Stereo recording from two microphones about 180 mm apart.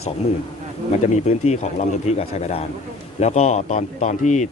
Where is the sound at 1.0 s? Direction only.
40° left (ahead or behind).